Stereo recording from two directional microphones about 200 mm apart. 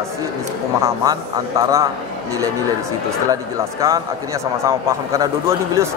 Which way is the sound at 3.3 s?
15° right (ahead or behind).